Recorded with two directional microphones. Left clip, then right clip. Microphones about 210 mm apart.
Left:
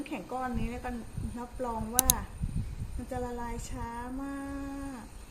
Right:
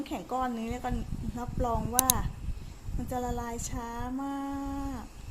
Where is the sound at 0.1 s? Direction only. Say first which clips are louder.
Right 4 dB; 30° right (ahead or behind).